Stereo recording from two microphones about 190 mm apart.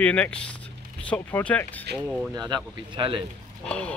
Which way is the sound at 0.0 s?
5° left (ahead or behind).